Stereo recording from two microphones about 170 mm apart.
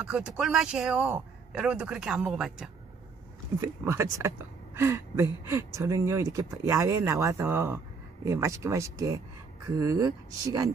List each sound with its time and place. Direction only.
0.0 s a man's voice: 5° right (ahead or behind)
3.6 s speech: 15° right (ahead or behind)